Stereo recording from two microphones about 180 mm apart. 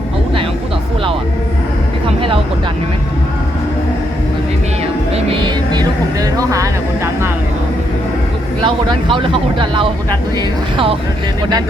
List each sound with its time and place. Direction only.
5.7 s music: 20° right (ahead or behind)
8.6 s speech: 25° right (ahead or behind)